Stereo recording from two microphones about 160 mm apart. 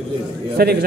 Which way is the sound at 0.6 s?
80° right.